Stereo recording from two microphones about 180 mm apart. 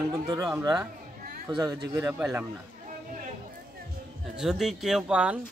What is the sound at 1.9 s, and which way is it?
Speech, 15° right (ahead or behind).